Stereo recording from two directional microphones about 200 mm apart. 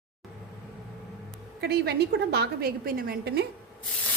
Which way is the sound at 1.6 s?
55° right (ahead or behind).